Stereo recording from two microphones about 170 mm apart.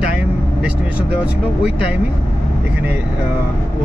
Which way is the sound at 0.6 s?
10° right (ahead or behind).